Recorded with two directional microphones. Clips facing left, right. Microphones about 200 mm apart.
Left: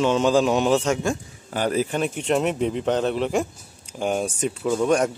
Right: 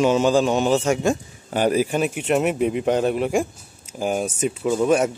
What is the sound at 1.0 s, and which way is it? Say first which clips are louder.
A man's voice: right 4 dB; 20° right (ahead or behind).